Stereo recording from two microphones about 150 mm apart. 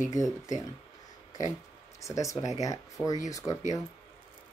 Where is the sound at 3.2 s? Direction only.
20° left (ahead or behind).